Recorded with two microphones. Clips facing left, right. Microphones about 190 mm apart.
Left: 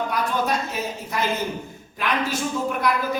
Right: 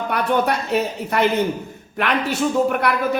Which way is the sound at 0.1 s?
65° right (ahead or behind).